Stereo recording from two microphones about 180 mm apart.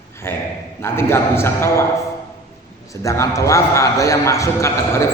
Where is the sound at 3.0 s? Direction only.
15° left (ahead or behind).